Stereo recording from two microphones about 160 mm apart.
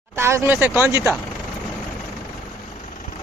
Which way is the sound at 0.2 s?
15° right (ahead or behind).